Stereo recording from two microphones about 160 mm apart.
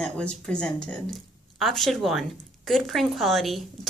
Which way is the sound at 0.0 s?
5° left (ahead or behind).